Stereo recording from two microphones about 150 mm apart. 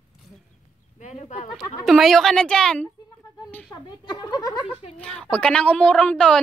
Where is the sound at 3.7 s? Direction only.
30° left (ahead or behind).